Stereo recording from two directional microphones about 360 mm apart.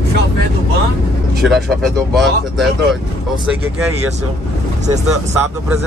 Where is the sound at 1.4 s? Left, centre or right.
Centre.